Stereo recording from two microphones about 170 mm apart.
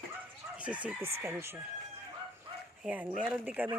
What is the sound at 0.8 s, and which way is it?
Speech, 15° right (ahead or behind).